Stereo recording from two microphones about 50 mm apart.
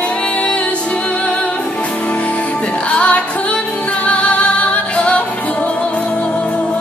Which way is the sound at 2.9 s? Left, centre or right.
Left.